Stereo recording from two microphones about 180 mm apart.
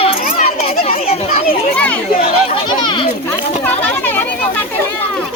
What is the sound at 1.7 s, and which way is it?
Chatter, 10° left (ahead or behind).